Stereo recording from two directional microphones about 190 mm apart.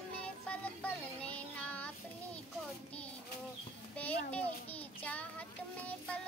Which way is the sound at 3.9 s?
10° left (ahead or behind).